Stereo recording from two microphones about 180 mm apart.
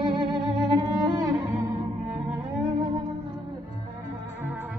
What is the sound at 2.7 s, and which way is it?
Music, 20° right (ahead or behind).